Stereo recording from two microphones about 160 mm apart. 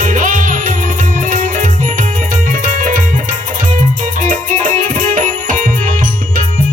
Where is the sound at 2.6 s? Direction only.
55° right (ahead or behind).